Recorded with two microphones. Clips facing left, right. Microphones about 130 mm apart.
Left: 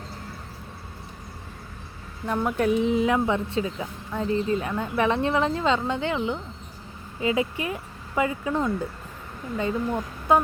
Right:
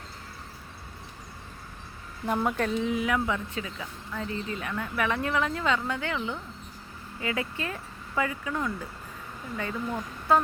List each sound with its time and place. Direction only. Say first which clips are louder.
2.2 s speech: left 3 dB; 5° right (ahead or behind)
2.8 s speech: left 5 dB; 25° left (ahead or behind)